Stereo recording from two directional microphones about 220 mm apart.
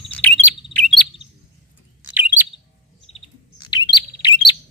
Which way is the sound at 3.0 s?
25° left (ahead or behind).